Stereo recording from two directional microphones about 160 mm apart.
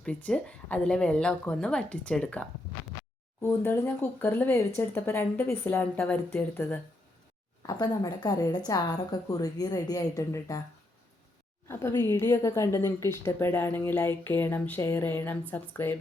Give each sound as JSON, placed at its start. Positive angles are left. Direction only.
{"t": 0.0, "sound": "a woman's voice", "side_deg": 10}
{"t": 7.7, "sound": "a woman's voice", "side_deg": 25}
{"t": 11.7, "sound": "a woman's voice", "side_deg": 15}